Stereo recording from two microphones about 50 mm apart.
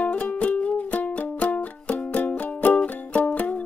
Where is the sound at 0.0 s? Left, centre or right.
Left.